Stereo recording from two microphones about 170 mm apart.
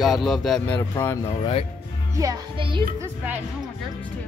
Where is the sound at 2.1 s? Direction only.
20° right (ahead or behind).